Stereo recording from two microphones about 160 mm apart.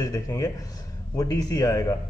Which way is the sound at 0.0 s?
20° left (ahead or behind).